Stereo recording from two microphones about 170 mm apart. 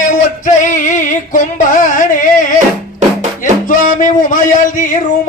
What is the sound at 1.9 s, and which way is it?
Carnatic music, 50° left (ahead or behind).